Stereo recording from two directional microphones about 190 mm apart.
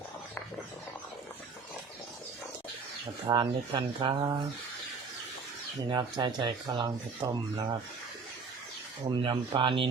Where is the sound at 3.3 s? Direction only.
25° right (ahead or behind).